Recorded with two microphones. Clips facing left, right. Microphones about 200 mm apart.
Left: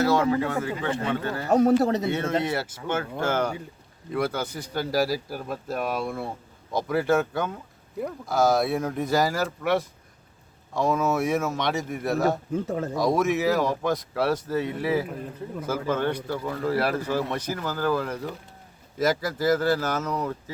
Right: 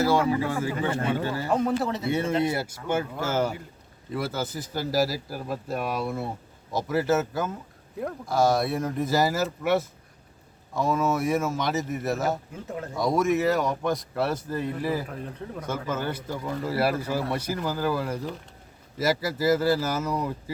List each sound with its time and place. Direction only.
0.3 s speech: 5° right (ahead or behind)
1.5 s speech: 40° left (ahead or behind)
2.0 s speech: 10° right (ahead or behind)
12.6 s speech: 40° left (ahead or behind)
13.0 s speech: centre (ahead or behind)
19.2 s speech: 10° right (ahead or behind)